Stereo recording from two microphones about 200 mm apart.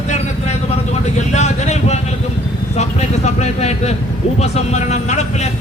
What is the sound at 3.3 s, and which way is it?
Speech, 35° left (ahead or behind).